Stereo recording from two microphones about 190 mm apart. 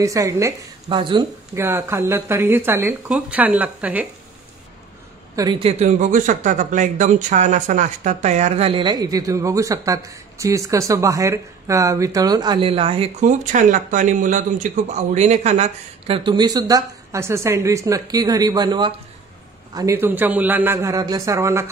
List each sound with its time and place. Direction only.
0.0 s speech: 15° right (ahead or behind)
1.5 s speech: 10° right (ahead or behind)
5.3 s a man's voice: 20° right (ahead or behind)